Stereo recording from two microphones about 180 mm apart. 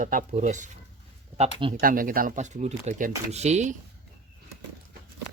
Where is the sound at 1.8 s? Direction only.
50° right (ahead or behind).